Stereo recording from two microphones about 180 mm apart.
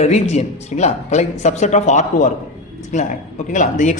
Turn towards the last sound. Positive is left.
turn(degrees=45)  # may be behind; listen again after turning